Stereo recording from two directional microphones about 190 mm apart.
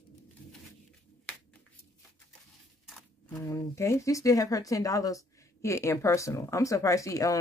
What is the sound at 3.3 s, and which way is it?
Speech, 15° left (ahead or behind).